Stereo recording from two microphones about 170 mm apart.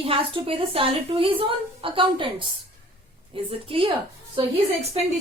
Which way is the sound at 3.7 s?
30° right (ahead or behind).